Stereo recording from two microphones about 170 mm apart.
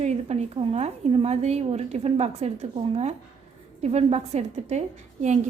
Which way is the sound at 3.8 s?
40° right (ahead or behind).